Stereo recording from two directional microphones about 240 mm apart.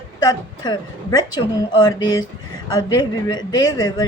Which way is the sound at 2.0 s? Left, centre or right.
Left.